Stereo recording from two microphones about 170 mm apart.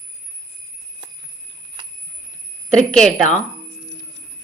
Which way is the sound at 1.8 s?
25° right (ahead or behind).